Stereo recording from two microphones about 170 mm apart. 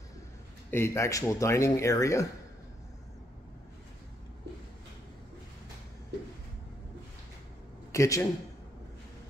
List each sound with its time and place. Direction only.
0.7 s speech: 15° left (ahead or behind)
7.9 s speech: 15° left (ahead or behind)